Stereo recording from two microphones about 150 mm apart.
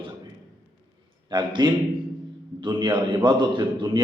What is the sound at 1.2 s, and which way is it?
A man's voice, 30° right (ahead or behind).